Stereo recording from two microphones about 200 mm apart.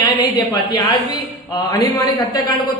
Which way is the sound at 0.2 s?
20° left (ahead or behind).